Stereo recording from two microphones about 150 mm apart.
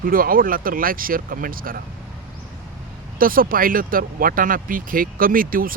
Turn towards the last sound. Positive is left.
turn(degrees=-70)  # may be behind; listen again after turning